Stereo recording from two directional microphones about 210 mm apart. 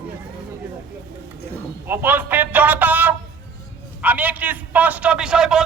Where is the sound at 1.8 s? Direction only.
10° right (ahead or behind).